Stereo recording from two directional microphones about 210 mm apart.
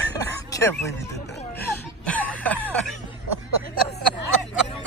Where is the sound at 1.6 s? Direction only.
10° left (ahead or behind).